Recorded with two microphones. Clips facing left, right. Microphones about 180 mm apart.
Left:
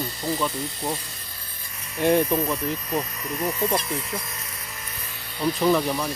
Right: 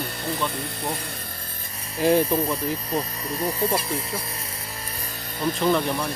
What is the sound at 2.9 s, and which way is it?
Speech, 30° right (ahead or behind).